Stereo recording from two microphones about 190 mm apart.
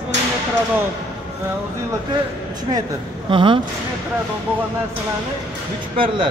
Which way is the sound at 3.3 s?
25° right (ahead or behind).